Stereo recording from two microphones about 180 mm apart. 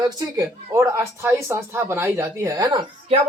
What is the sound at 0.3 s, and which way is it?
Speech, 15° right (ahead or behind).